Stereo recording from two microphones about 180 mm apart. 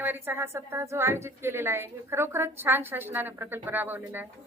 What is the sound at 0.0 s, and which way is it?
A woman's voice, 10° right (ahead or behind).